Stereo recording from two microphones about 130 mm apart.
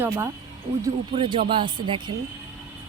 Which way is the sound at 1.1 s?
40° right (ahead or behind).